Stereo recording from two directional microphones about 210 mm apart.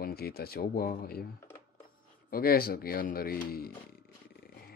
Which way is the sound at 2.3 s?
45° left (ahead or behind).